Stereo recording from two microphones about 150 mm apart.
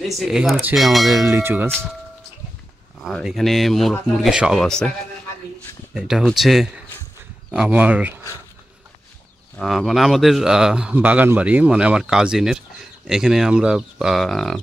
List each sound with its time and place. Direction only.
0.2 s a man's voice: 5° right (ahead or behind)
1.1 s tubular bells: 20° right (ahead or behind)
3.0 s a man's voice: centre (ahead or behind)
5.9 s a man's voice: 5° right (ahead or behind)
7.5 s tubular bells: 5° right (ahead or behind)
9.6 s a man's voice: centre (ahead or behind)